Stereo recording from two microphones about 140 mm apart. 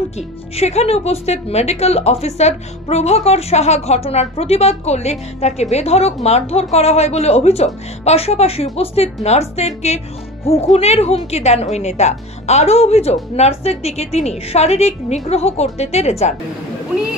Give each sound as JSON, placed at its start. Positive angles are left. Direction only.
{"t": 0.6, "sound": "speech", "side_deg": 50}